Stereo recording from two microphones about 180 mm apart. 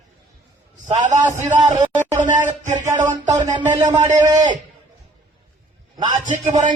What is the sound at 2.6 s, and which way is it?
Speech, 40° right (ahead or behind).